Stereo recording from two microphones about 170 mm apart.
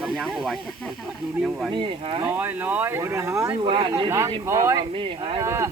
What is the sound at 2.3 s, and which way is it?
Speech, 10° right (ahead or behind).